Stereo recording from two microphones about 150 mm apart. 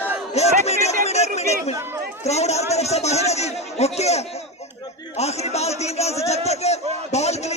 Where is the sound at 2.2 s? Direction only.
45° left (ahead or behind).